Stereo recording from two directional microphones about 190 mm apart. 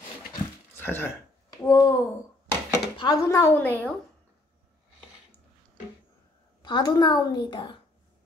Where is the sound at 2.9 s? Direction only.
20° left (ahead or behind).